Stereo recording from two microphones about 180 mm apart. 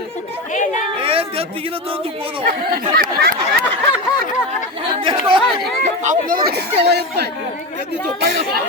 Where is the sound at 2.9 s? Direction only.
55° right (ahead or behind).